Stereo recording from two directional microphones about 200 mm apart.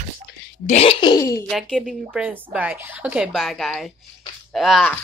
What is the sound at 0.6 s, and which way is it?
Speech, 30° left (ahead or behind).